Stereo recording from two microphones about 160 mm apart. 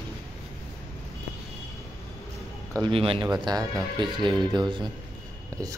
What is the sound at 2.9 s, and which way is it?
Speech, 35° right (ahead or behind).